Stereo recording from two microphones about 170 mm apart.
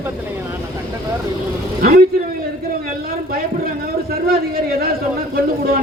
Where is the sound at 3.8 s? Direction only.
60° right (ahead or behind).